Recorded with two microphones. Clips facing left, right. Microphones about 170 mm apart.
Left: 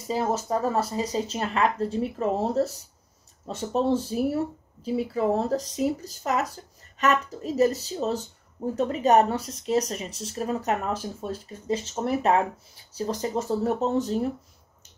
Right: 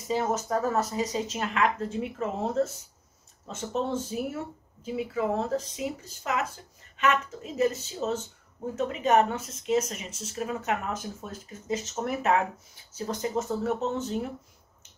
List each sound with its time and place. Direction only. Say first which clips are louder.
0.1 s speech: left 1 dB; 30° left (ahead or behind)